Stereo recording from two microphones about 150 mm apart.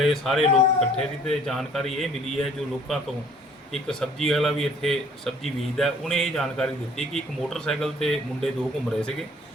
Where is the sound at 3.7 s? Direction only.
Centre (ahead or behind).